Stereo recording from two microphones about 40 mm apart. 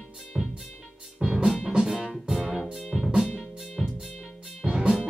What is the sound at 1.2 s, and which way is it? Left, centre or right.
Music, centre.